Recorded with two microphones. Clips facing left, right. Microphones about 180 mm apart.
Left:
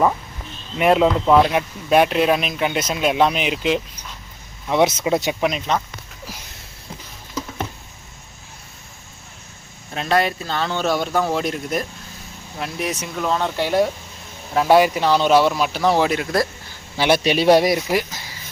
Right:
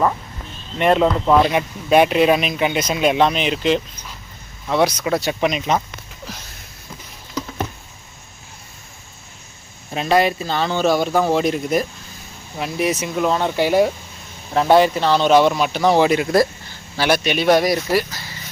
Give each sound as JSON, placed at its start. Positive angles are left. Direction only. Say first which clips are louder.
{"t": 0.8, "sound": "speech", "louder": "even", "side_deg": 5}
{"t": 4.7, "sound": "speech", "louder": "left 1 dB", "side_deg": 20}
{"t": 5.3, "sound": "speech", "louder": "right 2 dB", "side_deg": 0}
{"t": 9.9, "sound": "speech", "louder": "right 3 dB", "side_deg": -5}
{"t": 14.5, "sound": "speech", "louder": "right 1 dB", "side_deg": 5}
{"t": 17.2, "sound": "speech", "louder": "left 2 dB", "side_deg": 30}
{"t": 17.7, "sound": "speech", "louder": "right 2 dB", "side_deg": 15}